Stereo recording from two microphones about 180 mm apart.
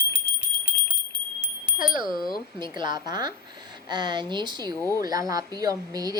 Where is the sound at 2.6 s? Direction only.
25° right (ahead or behind).